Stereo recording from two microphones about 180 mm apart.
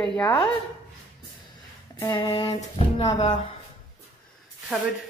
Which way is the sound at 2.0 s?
25° left (ahead or behind).